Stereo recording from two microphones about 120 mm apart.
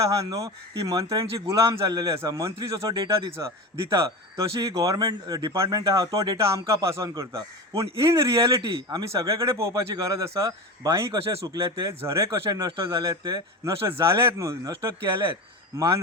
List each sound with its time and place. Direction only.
0.0 s speech: 30° right (ahead or behind)